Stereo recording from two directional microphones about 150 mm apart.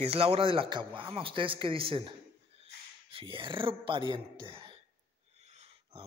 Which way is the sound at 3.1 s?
35° right (ahead or behind).